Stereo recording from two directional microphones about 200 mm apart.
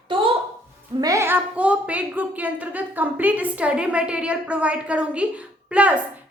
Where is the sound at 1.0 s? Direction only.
15° right (ahead or behind).